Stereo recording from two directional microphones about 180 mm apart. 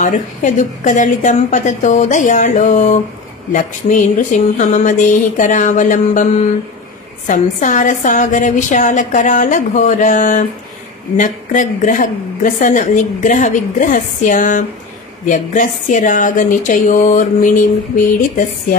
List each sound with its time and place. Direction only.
0.0 s a woman's voice: 45° left (ahead or behind)